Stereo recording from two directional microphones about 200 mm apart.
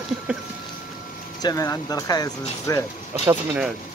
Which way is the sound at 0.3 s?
5° right (ahead or behind).